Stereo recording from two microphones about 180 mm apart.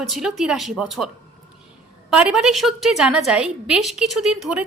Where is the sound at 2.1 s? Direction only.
5° right (ahead or behind).